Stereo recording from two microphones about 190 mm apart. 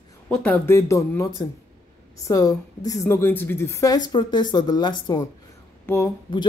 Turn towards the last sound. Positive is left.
turn(degrees=15)  # may be behind; listen again after turning